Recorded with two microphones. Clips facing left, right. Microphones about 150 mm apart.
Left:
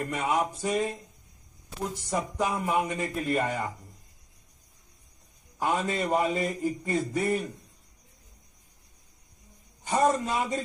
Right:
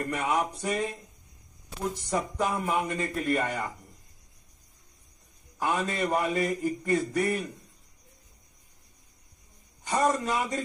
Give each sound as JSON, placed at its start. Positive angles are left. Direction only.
{"t": 0.0, "sound": "a sound", "side_deg": 5}
{"t": 2.0, "sound": "a man's voice", "side_deg": 5}
{"t": 5.6, "sound": "a man's voice", "side_deg": 15}
{"t": 9.8, "sound": "a man's voice", "side_deg": 15}